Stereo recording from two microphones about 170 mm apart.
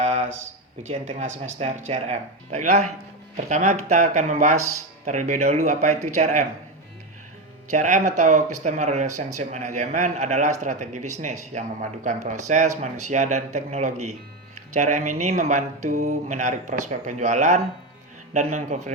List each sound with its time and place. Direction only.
0.0 s a sound: 40° right (ahead or behind)
0.8 s a man's voice: 45° right (ahead or behind)
7.7 s a man's voice: 45° right (ahead or behind)